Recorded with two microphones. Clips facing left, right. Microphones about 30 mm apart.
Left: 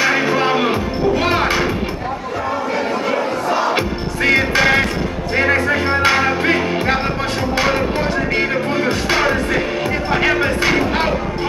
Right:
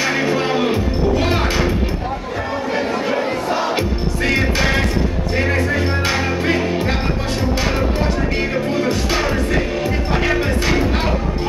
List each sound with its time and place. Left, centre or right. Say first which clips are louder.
0.0 s music: left 3 dB; centre
2.7 s music: right 1 dB; centre
8.4 s music: left 2 dB; centre